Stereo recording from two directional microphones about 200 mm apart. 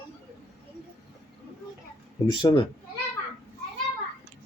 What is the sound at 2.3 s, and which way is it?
Speech, 25° left (ahead or behind).